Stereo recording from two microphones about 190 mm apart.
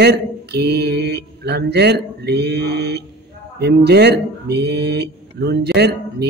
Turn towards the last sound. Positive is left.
turn(degrees=-60)  # may be behind; listen again after turning